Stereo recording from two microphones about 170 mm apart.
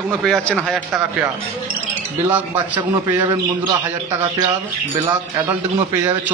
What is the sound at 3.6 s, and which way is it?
Speech, 25° right (ahead or behind).